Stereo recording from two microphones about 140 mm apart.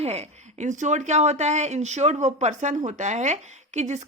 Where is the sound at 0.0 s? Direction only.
50° right (ahead or behind).